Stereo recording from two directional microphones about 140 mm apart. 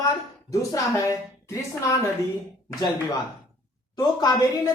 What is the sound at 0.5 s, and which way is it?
Speech, 20° left (ahead or behind).